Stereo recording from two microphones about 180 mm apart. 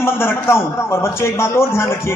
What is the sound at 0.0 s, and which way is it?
A man's voice, 15° left (ahead or behind).